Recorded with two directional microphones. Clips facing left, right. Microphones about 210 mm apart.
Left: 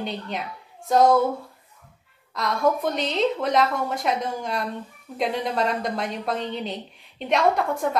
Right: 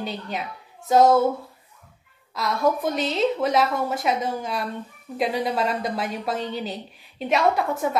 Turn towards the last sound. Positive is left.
turn(degrees=-5)  # may be behind; listen again after turning